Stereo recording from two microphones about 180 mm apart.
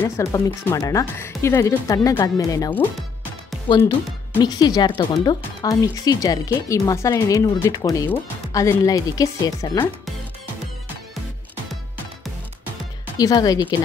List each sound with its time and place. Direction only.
0.0 s speech: 15° left (ahead or behind)
2.7 s speech: 10° left (ahead or behind)
3.6 s speech: 25° left (ahead or behind)
13.2 s speech: 20° left (ahead or behind)